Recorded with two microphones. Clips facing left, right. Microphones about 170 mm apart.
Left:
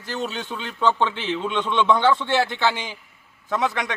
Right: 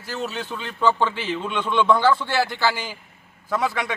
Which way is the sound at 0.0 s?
5° right (ahead or behind).